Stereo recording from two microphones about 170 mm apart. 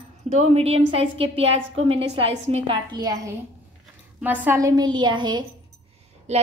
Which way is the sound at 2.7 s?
25° right (ahead or behind).